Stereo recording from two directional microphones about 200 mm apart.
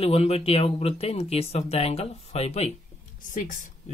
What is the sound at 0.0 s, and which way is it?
Speech, 30° left (ahead or behind).